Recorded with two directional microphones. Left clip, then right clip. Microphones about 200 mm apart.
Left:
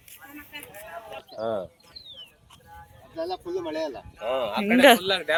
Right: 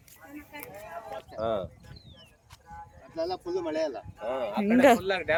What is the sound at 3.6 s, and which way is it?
Speech, 40° left (ahead or behind).